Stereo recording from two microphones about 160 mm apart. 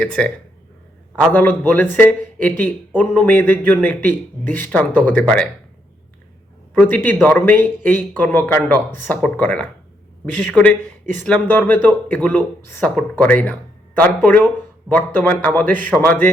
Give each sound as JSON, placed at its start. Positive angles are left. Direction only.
{"t": 0.0, "sound": "speech", "side_deg": 5}
{"t": 1.3, "sound": "speech", "side_deg": 10}
{"t": 6.7, "sound": "speech", "side_deg": 10}